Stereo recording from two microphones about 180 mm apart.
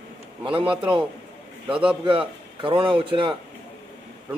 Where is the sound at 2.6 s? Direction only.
30° right (ahead or behind).